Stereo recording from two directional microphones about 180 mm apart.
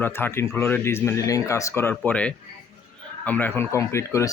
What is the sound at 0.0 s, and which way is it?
Speech, 10° left (ahead or behind).